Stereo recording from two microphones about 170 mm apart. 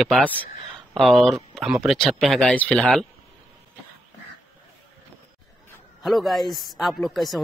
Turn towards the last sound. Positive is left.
turn(degrees=0)  # may be behind; listen again after turning